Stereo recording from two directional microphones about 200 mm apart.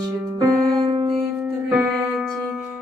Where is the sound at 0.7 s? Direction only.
25° right (ahead or behind).